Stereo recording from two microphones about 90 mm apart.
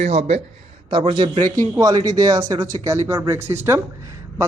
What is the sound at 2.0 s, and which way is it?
A man's voice, 45° right (ahead or behind).